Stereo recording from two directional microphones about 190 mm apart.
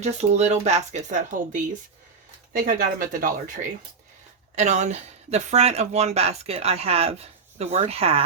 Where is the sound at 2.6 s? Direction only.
50° right (ahead or behind).